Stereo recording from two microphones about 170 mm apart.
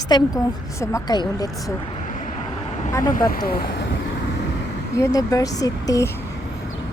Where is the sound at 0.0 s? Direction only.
25° left (ahead or behind).